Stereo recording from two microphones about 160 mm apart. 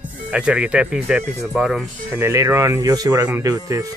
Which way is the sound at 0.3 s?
5° right (ahead or behind).